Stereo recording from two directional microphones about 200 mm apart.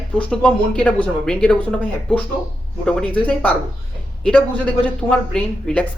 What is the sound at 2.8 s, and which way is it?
Speech, 5° left (ahead or behind).